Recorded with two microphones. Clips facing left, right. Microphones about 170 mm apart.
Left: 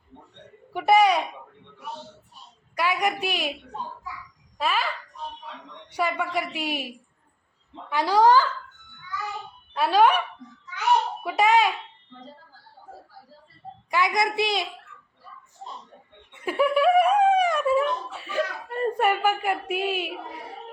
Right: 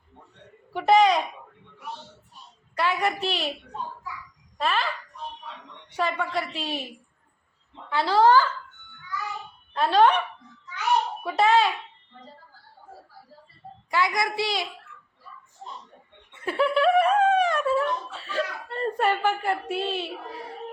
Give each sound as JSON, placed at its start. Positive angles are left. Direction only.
{"t": 0.7, "sound": "a sound", "side_deg": 10}
{"t": 2.7, "sound": "a woman's voice", "side_deg": 10}
{"t": 4.5, "sound": "speech", "side_deg": 10}
{"t": 5.9, "sound": "speech", "side_deg": 10}
{"t": 9.7, "sound": "speech", "side_deg": 10}
{"t": 11.2, "sound": "speech", "side_deg": 10}
{"t": 13.9, "sound": "a woman's voice", "side_deg": 20}
{"t": 16.4, "sound": "speech", "side_deg": 10}